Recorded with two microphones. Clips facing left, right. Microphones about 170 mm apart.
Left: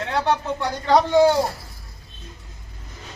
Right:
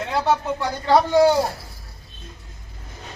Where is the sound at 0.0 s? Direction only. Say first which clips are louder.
Right 1 dB; 5° right (ahead or behind).